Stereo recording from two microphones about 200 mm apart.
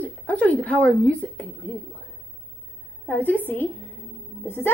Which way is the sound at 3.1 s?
10° left (ahead or behind).